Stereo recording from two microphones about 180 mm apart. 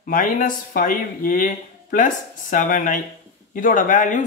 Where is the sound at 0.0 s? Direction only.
50° left (ahead or behind).